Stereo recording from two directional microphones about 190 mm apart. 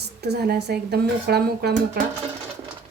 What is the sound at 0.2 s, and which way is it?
Speech, 60° right (ahead or behind).